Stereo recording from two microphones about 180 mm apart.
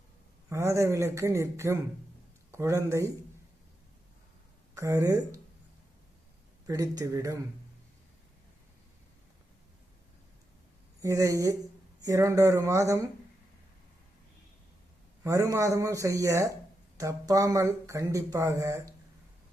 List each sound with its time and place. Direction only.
0.5 s speech: 15° right (ahead or behind)
4.7 s speech: 15° right (ahead or behind)
6.7 s speech: 20° right (ahead or behind)
11.0 s speech: 15° right (ahead or behind)
15.2 s speech: 15° right (ahead or behind)